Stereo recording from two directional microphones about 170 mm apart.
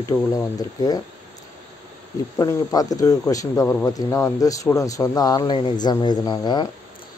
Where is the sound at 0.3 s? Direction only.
20° left (ahead or behind).